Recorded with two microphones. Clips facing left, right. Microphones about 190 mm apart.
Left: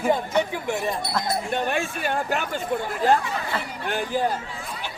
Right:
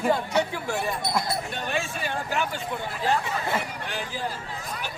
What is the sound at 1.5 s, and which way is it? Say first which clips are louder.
A man's voice: left 5 dB; 55° left (ahead or behind).